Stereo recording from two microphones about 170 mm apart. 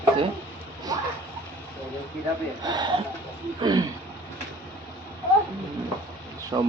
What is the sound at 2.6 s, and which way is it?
Speech, 25° right (ahead or behind).